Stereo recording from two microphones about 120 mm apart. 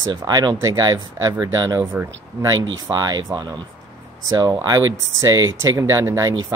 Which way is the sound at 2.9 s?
35° right (ahead or behind).